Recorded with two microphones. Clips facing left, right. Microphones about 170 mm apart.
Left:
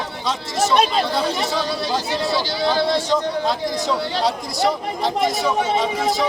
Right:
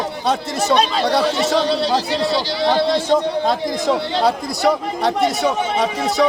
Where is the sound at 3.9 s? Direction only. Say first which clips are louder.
Right 5 dB; 40° right (ahead or behind).